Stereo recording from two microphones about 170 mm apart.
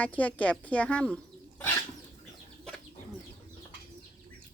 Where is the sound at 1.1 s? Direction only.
10° left (ahead or behind).